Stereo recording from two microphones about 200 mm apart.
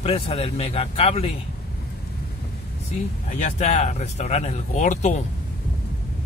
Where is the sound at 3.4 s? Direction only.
35° left (ahead or behind).